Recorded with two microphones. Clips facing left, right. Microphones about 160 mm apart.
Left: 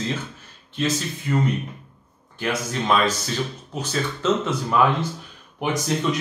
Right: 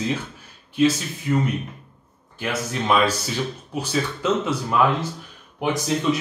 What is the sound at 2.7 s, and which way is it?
Speech, 5° right (ahead or behind).